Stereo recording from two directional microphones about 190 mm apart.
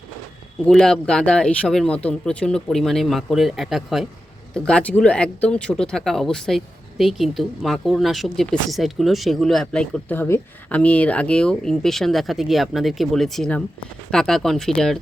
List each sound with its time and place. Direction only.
0.6 s speech: 5° left (ahead or behind)